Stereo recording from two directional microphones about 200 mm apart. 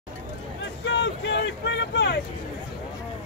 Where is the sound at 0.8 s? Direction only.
65° left (ahead or behind).